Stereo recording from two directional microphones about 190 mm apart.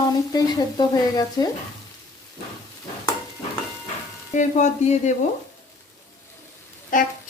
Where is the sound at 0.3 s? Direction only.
20° left (ahead or behind).